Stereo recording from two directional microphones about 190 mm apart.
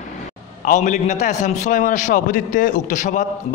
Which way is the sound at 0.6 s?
40° left (ahead or behind).